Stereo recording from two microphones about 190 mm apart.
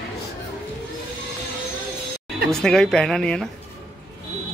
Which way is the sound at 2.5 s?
Centre (ahead or behind).